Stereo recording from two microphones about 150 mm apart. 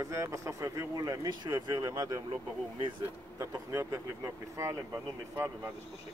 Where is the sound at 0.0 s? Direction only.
20° right (ahead or behind).